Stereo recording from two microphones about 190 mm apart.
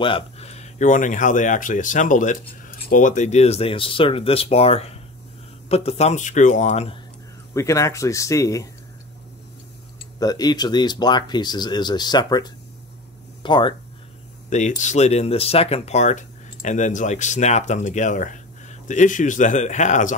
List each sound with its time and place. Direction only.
0.0 s speech: 30° left (ahead or behind)
7.5 s speech: 15° left (ahead or behind)
10.1 s speech: 20° left (ahead or behind)
14.5 s speech: 40° left (ahead or behind)